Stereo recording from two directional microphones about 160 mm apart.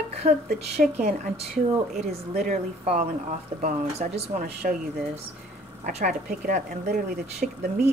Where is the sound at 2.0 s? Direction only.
50° right (ahead or behind).